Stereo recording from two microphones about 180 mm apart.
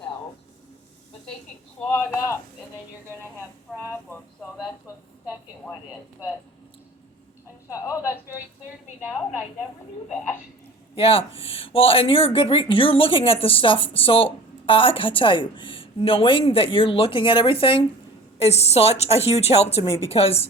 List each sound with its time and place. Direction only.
1.8 s a woman's voice: 10° left (ahead or behind)
7.7 s a woman's voice: 15° left (ahead or behind)
10.9 s speech: 30° left (ahead or behind)